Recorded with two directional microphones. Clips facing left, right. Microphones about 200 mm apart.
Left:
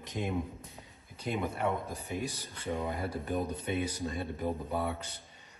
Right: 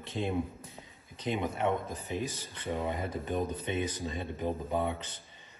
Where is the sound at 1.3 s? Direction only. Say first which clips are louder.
Right 2 dB; centre (ahead or behind).